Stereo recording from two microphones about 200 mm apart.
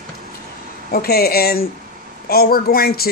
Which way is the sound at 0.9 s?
50° left (ahead or behind).